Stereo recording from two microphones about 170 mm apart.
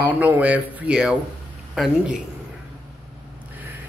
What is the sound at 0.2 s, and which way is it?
Speech, 10° right (ahead or behind).